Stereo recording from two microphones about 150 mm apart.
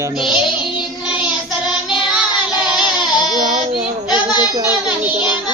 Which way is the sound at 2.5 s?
5° right (ahead or behind).